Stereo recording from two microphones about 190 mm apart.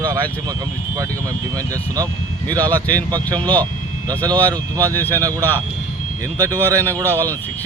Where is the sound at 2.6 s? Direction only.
10° left (ahead or behind).